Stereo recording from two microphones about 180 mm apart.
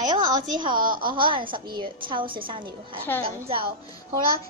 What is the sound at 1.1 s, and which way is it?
A woman's voice, 25° right (ahead or behind).